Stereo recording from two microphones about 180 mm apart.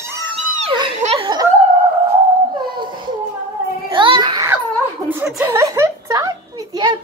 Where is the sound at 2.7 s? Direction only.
25° right (ahead or behind).